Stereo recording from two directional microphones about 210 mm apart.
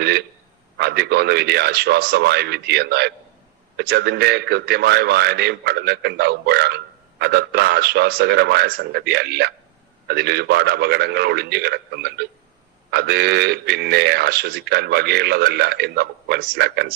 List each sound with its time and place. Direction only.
0.8 s speech: 50° right (ahead or behind)